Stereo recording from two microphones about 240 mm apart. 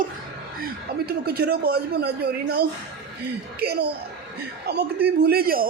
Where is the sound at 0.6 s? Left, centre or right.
Right.